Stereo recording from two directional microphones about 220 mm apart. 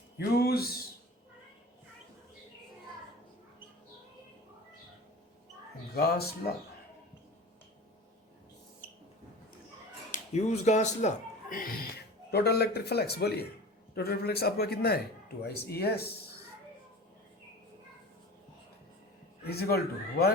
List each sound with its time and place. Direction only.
0.2 s a man's voice: 45° left (ahead or behind)
5.9 s a man's voice: 45° left (ahead or behind)
10.1 s a man's voice: 30° left (ahead or behind)
19.5 s a man's voice: 45° left (ahead or behind)